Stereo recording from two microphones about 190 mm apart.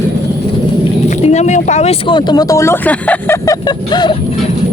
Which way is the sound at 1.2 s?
35° left (ahead or behind).